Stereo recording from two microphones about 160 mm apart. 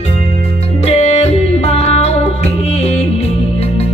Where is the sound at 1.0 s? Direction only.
45° left (ahead or behind).